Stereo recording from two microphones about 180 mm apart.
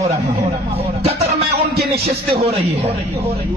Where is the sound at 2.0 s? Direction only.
35° right (ahead or behind).